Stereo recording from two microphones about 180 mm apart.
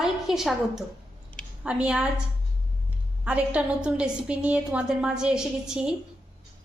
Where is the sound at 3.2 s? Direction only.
5° right (ahead or behind).